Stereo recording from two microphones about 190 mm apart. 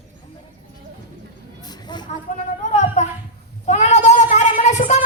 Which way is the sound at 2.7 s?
35° left (ahead or behind).